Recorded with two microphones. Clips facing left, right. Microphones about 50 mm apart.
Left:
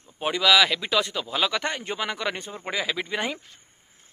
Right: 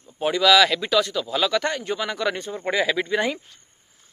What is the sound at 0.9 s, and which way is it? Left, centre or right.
Speech, left.